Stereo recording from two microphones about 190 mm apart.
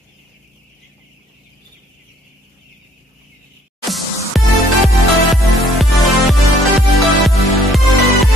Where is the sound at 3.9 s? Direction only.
Centre (ahead or behind).